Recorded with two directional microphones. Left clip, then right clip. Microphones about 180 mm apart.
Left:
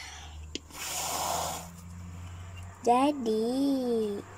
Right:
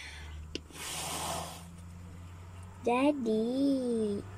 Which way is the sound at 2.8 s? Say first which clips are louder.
Left 4 dB; centre (ahead or behind).